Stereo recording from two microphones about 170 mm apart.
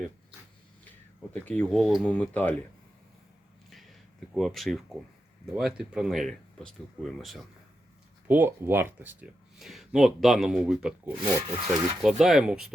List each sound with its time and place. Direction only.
1.3 s speech: 5° left (ahead or behind)
3.7 s a sound: centre (ahead or behind)
4.4 s speech: centre (ahead or behind)
8.3 s speech: 10° right (ahead or behind)
9.6 s speech: centre (ahead or behind)
11.2 s speech: 25° right (ahead or behind)
12.2 s speech: centre (ahead or behind)